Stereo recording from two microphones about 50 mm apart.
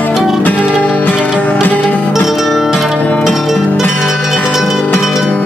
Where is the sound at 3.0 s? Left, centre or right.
Left.